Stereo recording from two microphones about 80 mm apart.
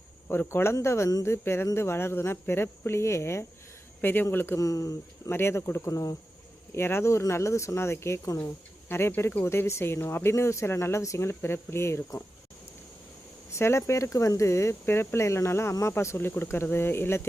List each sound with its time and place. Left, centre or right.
0.3 s speech: left
4.6 s speech: left
5.3 s speech: left
5.9 s speech: left
6.7 s speech: left
13.5 s speech: left